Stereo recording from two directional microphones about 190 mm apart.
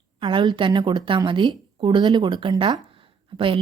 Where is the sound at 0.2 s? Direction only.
25° right (ahead or behind).